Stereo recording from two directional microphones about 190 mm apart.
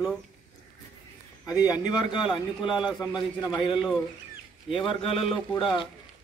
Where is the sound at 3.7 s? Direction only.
5° right (ahead or behind).